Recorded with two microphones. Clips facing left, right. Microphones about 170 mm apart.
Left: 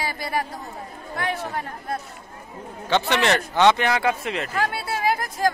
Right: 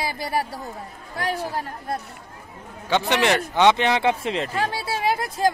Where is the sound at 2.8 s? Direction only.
15° right (ahead or behind).